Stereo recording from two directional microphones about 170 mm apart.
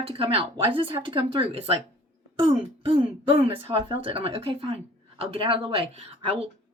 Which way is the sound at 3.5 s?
35° right (ahead or behind).